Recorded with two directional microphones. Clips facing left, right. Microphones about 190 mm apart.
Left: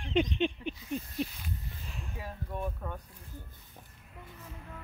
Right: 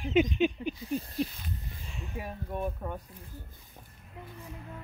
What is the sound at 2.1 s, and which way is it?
Speech, 15° right (ahead or behind).